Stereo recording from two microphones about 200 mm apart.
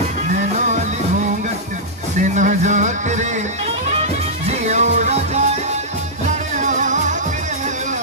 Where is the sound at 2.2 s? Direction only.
40° right (ahead or behind).